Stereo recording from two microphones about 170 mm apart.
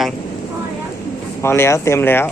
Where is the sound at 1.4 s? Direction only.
15° left (ahead or behind).